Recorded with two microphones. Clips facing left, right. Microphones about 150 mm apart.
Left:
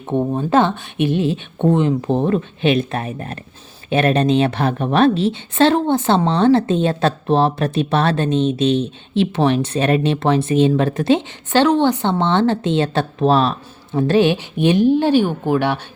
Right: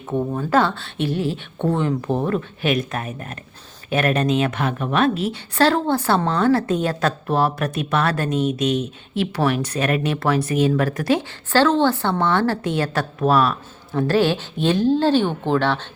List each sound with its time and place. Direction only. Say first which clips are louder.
0.1 s a woman's voice: left 3 dB; 25° left (ahead or behind)